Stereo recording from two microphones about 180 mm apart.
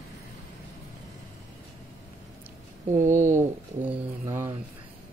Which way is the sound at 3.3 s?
10° right (ahead or behind).